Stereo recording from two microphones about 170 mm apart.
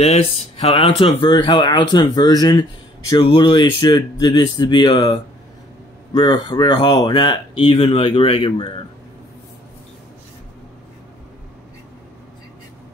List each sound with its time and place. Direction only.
0.0 s speech: 40° left (ahead or behind)